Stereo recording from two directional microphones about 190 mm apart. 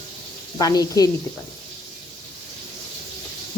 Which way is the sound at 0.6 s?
20° left (ahead or behind).